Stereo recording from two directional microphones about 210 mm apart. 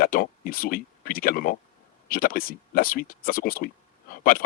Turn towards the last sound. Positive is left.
turn(degrees=45)  # may be behind; listen again after turning